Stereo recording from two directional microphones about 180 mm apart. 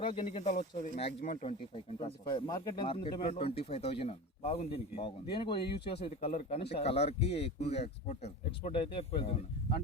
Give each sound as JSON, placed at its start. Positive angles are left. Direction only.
{"t": 0.0, "sound": "speech", "side_deg": 35}
{"t": 1.5, "sound": "speech", "side_deg": 30}